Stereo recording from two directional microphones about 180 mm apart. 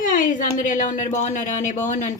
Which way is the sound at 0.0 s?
45° left (ahead or behind).